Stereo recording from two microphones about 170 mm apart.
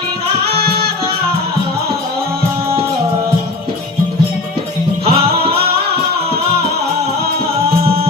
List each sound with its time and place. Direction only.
0.5 s music: 70° right (ahead or behind)
5.0 s music: 35° right (ahead or behind)